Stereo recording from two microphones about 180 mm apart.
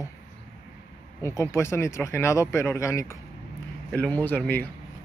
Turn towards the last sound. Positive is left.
turn(degrees=10)  # may be behind; listen again after turning